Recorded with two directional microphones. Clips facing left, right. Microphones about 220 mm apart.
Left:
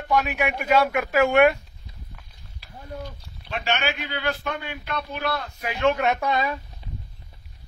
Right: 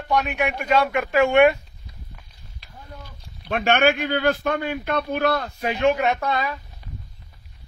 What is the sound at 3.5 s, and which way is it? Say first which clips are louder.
A man's voice: right 8 dB; 55° right (ahead or behind).